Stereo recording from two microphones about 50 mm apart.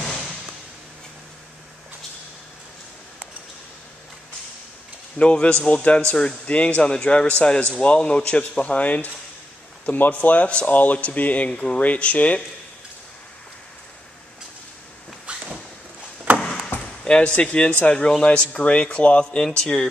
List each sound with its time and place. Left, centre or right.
5.2 s speech: left
15.3 s a sound: right
17.0 s speech: centre